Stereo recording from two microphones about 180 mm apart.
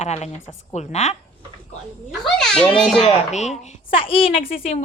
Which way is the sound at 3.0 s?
40° left (ahead or behind).